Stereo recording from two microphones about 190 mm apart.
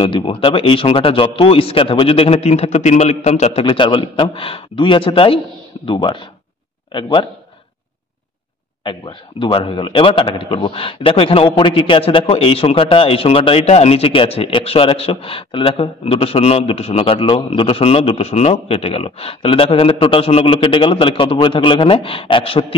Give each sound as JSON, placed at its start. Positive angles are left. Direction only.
{"t": 0.0, "sound": "a man's voice", "side_deg": 25}
{"t": 9.4, "sound": "a man's voice", "side_deg": 25}